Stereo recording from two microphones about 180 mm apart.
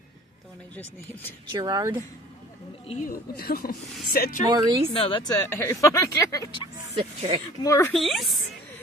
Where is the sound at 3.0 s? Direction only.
55° left (ahead or behind).